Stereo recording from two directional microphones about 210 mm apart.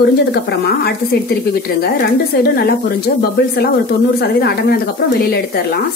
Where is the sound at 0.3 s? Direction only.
50° left (ahead or behind).